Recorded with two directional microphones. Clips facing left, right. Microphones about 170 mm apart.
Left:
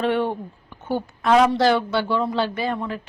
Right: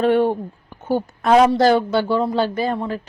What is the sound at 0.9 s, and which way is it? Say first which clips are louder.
Speech: right 3 dB; 40° right (ahead or behind).